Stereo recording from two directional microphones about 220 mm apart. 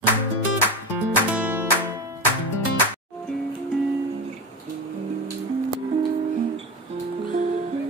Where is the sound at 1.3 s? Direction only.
10° right (ahead or behind).